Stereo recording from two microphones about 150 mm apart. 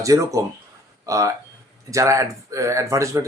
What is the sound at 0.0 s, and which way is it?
Speech, 20° right (ahead or behind).